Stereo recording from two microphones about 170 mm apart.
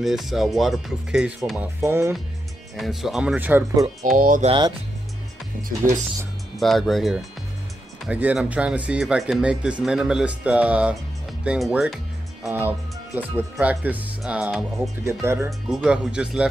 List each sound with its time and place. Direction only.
0.0 s speech: centre (ahead or behind)
1.8 s speech: 15° right (ahead or behind)
2.7 s speech: centre (ahead or behind)
4.2 s speech: 55° right (ahead or behind)
4.5 s speech: 25° right (ahead or behind)
6.6 s speech: centre (ahead or behind)
15.0 s speech: 15° right (ahead or behind)